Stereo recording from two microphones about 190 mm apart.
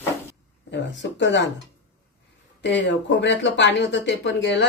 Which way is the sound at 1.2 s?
70° left (ahead or behind).